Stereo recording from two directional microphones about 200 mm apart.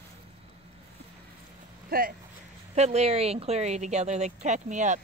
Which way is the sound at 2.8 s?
35° right (ahead or behind).